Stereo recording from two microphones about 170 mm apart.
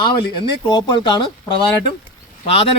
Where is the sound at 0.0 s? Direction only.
25° left (ahead or behind).